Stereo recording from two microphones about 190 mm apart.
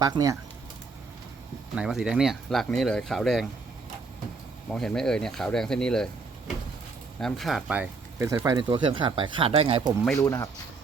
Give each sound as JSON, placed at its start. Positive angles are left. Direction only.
{"t": 0.0, "sound": "speech", "side_deg": -20}
{"t": 1.7, "sound": "speech", "side_deg": -5}
{"t": 4.7, "sound": "speech", "side_deg": 5}
{"t": 7.2, "sound": "speech", "side_deg": 0}
{"t": 10.2, "sound": "speech", "side_deg": 15}